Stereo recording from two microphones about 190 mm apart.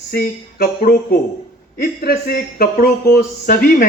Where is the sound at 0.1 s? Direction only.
55° left (ahead or behind).